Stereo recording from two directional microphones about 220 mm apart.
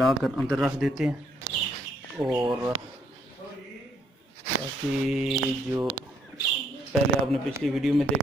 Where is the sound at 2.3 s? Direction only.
20° right (ahead or behind).